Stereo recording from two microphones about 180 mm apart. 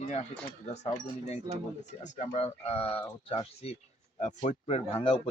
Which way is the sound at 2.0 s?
40° left (ahead or behind).